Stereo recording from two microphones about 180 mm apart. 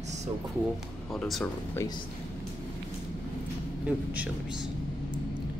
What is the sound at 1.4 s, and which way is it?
Speech, 10° left (ahead or behind).